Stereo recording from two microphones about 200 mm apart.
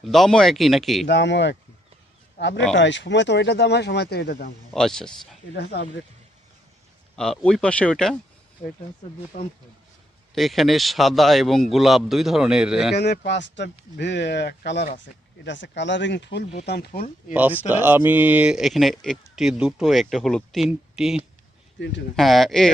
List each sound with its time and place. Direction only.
0.0 s speech: centre (ahead or behind)
1.0 s speech: 60° left (ahead or behind)
4.7 s speech: centre (ahead or behind)
7.2 s speech: 5° left (ahead or behind)
9.3 s speech: 40° left (ahead or behind)
10.3 s speech: centre (ahead or behind)
13.0 s speech: 55° left (ahead or behind)
17.7 s speech: 10° right (ahead or behind)